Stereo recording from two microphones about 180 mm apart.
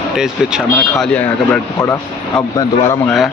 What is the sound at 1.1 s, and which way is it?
Speech, 10° left (ahead or behind).